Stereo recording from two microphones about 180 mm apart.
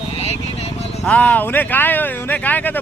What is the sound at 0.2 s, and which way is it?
Vehicle, 35° left (ahead or behind).